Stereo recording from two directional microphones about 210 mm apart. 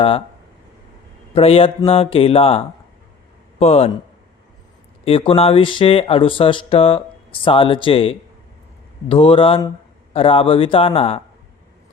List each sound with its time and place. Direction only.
1.4 s speech: 25° left (ahead or behind)
5.0 s speech: 25° left (ahead or behind)